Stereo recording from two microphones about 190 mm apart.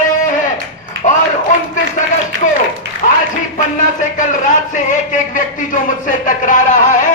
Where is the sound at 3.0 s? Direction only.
40° left (ahead or behind).